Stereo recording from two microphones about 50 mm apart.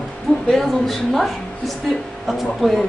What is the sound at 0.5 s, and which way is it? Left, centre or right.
Speech, centre.